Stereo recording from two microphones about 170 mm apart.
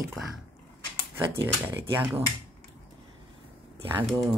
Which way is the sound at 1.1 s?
10° right (ahead or behind).